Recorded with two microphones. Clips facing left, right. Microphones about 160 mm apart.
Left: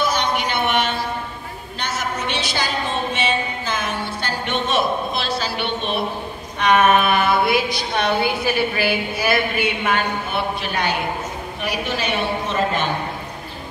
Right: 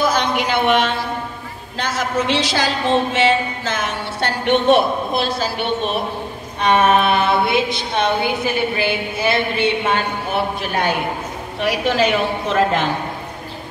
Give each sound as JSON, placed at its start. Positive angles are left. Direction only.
{"t": 0.4, "sound": "a man's voice", "side_deg": -90}
{"t": 6.6, "sound": "a woman's voice", "side_deg": -30}
{"t": 10.3, "sound": "a man's voice", "side_deg": -50}
{"t": 11.6, "sound": "a woman's voice", "side_deg": -90}